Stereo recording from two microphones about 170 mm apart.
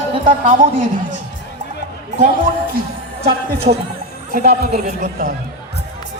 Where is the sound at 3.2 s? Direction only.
65° right (ahead or behind).